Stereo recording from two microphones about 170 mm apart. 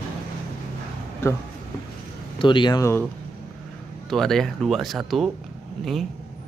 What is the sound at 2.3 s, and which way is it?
Speech, 30° left (ahead or behind).